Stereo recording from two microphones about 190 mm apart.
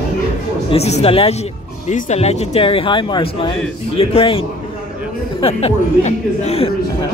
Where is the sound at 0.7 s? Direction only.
35° left (ahead or behind).